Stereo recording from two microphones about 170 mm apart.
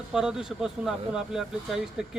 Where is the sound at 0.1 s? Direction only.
5° right (ahead or behind).